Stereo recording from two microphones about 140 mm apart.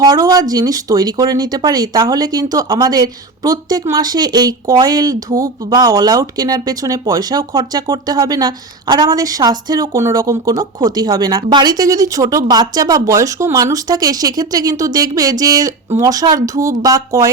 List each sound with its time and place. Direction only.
0.0 s speech: 25° right (ahead or behind)